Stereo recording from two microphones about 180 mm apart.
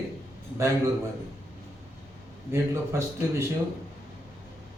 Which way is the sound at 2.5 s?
15° right (ahead or behind).